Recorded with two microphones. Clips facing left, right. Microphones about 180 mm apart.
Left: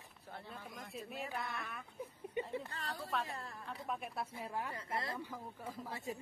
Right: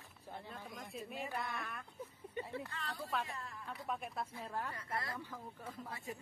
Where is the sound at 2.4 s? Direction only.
15° left (ahead or behind).